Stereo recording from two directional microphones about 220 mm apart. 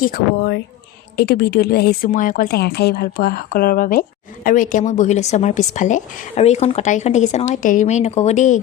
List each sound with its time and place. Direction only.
0.0 s a woman's voice: 45° left (ahead or behind)